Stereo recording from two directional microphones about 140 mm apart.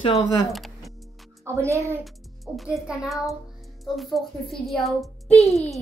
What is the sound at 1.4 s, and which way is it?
Speech, 20° right (ahead or behind).